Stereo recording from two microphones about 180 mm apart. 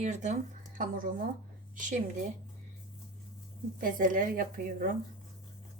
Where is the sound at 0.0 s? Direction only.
40° right (ahead or behind).